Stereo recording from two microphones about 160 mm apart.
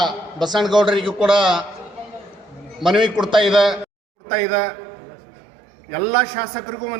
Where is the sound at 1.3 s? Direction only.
30° right (ahead or behind).